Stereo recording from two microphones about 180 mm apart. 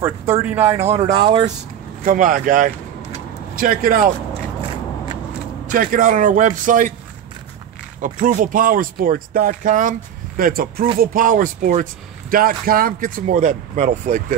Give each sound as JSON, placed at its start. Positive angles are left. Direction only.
{"t": 0.0, "sound": "speech", "side_deg": -10}
{"t": 0.8, "sound": "speech", "side_deg": -35}
{"t": 2.0, "sound": "speech", "side_deg": -50}
{"t": 4.3, "sound": "scissors", "side_deg": -30}
{"t": 5.7, "sound": "speech", "side_deg": -50}
{"t": 8.0, "sound": "speech", "side_deg": -45}